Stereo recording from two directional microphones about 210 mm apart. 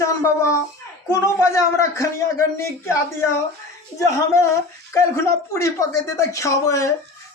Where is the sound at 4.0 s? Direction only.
15° left (ahead or behind).